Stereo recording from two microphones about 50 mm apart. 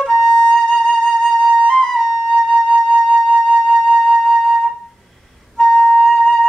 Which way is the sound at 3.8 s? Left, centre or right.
Centre.